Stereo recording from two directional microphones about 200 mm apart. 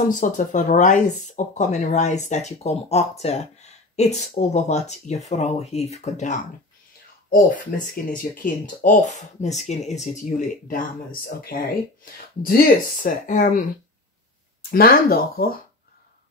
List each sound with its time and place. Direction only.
0.1 s speech: 40° left (ahead or behind)
14.7 s speech: 50° left (ahead or behind)